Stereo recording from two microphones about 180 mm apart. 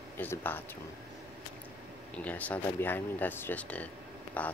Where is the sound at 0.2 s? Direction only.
10° left (ahead or behind).